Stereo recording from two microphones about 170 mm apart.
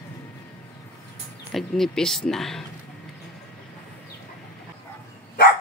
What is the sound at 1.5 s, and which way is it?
Speech, centre (ahead or behind).